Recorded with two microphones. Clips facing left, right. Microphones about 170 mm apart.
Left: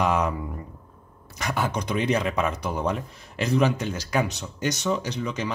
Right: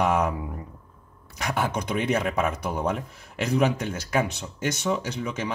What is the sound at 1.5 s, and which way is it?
Speech, centre (ahead or behind).